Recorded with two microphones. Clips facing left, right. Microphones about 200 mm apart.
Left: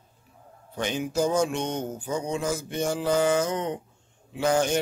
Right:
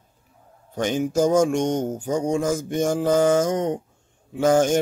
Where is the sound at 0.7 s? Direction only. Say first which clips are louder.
Right 5 dB; 45° right (ahead or behind).